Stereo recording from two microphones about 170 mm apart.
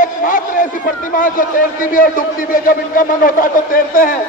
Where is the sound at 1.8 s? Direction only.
55° left (ahead or behind).